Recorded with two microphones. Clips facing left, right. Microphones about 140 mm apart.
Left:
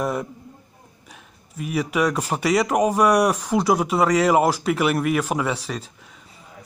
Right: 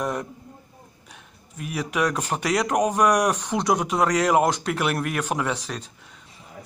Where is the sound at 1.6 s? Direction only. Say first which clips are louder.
Left 3 dB; 5° left (ahead or behind).